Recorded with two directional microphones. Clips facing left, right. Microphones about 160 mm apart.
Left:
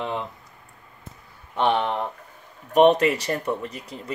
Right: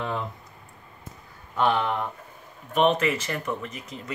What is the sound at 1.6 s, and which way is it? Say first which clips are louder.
Speech: left 2 dB; 25° left (ahead or behind).